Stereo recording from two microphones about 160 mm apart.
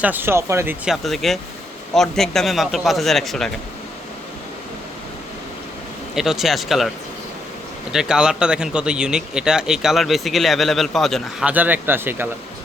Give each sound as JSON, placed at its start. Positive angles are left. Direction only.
{"t": 0.0, "sound": "speech", "side_deg": -10}
{"t": 0.9, "sound": "speech", "side_deg": 0}
{"t": 6.1, "sound": "speech", "side_deg": -5}
{"t": 7.9, "sound": "speech", "side_deg": -5}